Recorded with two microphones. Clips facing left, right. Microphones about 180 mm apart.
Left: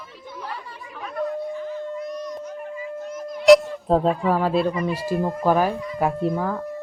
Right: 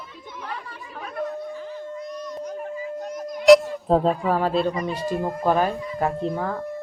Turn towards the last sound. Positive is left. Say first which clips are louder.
# left 2 dB
turn(degrees=5)  # may be behind; listen again after turning